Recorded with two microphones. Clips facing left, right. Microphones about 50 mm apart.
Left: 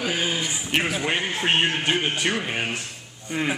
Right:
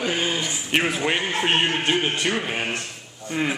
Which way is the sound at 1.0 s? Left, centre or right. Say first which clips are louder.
Right 2 dB; centre.